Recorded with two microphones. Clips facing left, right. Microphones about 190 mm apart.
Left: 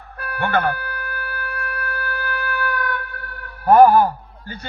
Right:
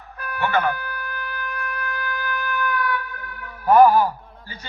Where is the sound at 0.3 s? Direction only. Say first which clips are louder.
Left 1 dB; 55° left (ahead or behind).